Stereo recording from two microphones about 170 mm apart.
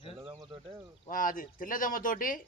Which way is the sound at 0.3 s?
25° right (ahead or behind).